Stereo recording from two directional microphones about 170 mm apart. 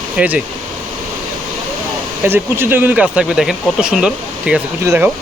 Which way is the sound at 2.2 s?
10° right (ahead or behind).